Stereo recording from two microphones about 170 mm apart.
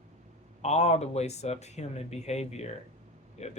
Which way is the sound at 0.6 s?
40° left (ahead or behind).